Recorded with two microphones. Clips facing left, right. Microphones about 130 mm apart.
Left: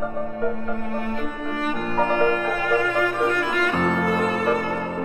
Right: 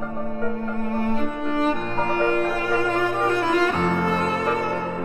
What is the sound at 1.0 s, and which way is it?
Cello, 30° right (ahead or behind).